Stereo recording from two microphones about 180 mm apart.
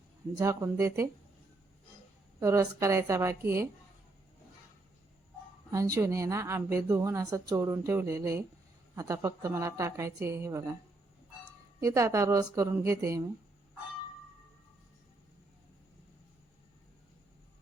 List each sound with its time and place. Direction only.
0.3 s speech: 15° right (ahead or behind)
2.4 s speech: 15° right (ahead or behind)
5.7 s speech: 15° right (ahead or behind)
11.8 s speech: 15° right (ahead or behind)